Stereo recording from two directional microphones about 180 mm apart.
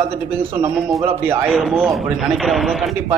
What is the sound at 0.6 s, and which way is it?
Speech, 15° right (ahead or behind).